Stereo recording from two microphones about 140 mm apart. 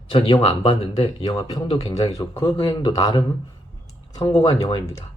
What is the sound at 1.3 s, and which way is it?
Speech, 30° left (ahead or behind).